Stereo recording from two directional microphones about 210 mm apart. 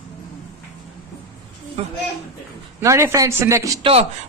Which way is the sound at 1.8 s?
30° right (ahead or behind).